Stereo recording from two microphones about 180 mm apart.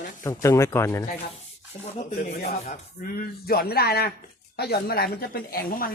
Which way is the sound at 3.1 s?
60° left (ahead or behind).